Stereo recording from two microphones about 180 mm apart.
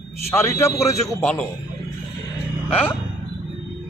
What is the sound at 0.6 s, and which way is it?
Speech, 15° left (ahead or behind).